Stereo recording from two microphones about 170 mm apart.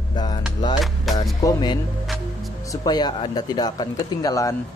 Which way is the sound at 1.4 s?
20° left (ahead or behind).